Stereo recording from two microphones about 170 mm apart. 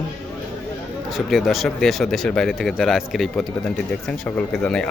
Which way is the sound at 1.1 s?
Centre (ahead or behind).